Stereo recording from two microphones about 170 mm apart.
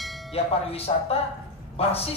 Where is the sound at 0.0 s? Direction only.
Centre (ahead or behind).